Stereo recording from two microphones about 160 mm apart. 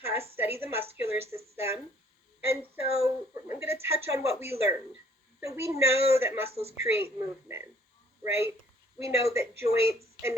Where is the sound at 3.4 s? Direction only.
15° right (ahead or behind).